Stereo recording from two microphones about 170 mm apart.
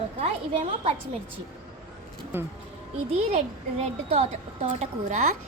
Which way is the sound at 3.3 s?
40° right (ahead or behind).